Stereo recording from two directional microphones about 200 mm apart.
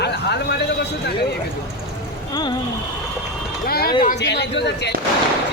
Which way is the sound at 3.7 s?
50° left (ahead or behind).